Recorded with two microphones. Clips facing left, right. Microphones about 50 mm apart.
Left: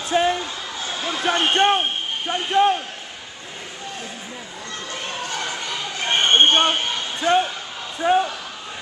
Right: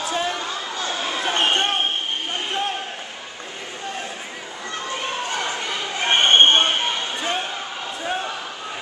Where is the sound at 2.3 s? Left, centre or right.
Left.